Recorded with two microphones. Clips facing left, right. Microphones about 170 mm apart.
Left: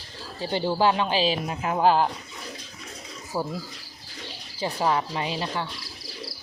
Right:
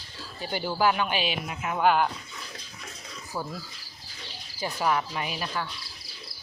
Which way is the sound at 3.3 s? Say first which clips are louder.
Left 5 dB; 20° left (ahead or behind).